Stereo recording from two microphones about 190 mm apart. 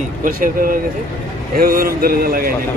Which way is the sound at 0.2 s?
50° right (ahead or behind).